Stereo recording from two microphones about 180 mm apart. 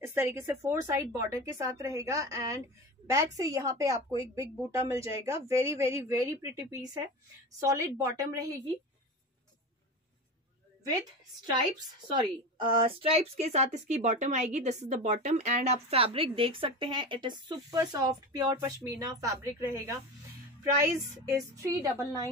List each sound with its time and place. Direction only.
0.0 s a woman's voice: 15° right (ahead or behind)
12.1 s a woman's voice: 25° right (ahead or behind)